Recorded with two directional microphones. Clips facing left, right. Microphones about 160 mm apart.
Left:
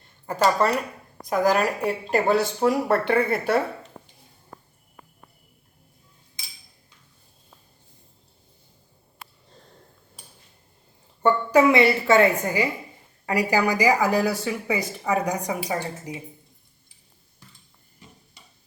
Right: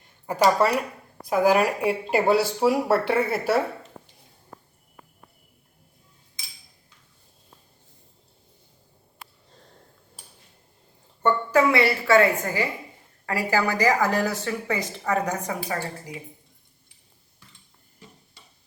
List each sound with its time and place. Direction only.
0.0 s speech: 10° right (ahead or behind)
11.2 s a woman's voice: 15° left (ahead or behind)